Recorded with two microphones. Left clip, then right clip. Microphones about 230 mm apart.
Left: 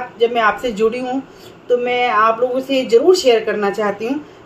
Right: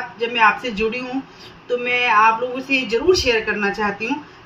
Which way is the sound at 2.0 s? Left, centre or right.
Centre.